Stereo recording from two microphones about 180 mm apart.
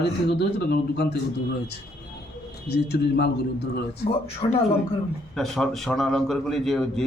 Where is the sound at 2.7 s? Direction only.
65° left (ahead or behind).